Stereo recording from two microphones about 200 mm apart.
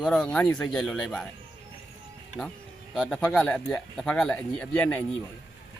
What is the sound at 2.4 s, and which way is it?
Speech, centre (ahead or behind).